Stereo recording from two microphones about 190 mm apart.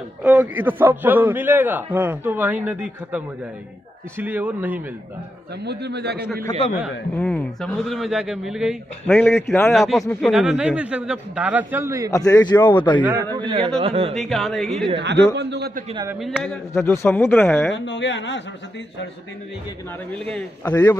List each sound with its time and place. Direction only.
0.2 s a man's voice: 5° right (ahead or behind)
5.6 s a man's voice: 60° right (ahead or behind)
7.2 s a man's voice: 5° left (ahead or behind)
9.1 s speech: 10° left (ahead or behind)
9.7 s a man's voice: centre (ahead or behind); by 12.1 s 15° right (ahead or behind)
12.1 s a man's voice: 20° left (ahead or behind)
13.0 s a man's voice: 15° right (ahead or behind)
14.1 s a man's voice: centre (ahead or behind)
15.0 s a man's voice: 65° right (ahead or behind)
16.2 s a man's voice: centre (ahead or behind)
16.7 s speech: 15° left (ahead or behind)
17.7 s speech: 70° left (ahead or behind)
20.1 s speech: 10° left (ahead or behind)